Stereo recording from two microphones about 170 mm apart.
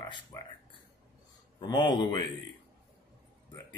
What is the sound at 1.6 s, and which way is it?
Speech, 25° left (ahead or behind).